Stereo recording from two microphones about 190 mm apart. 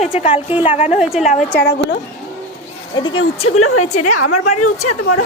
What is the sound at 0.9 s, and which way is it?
Speech, centre (ahead or behind).